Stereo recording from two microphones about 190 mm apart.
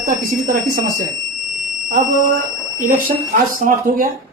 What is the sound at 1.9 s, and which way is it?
Speech, 45° right (ahead or behind).